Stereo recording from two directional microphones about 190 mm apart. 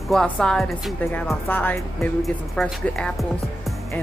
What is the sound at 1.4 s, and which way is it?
Music, 10° left (ahead or behind).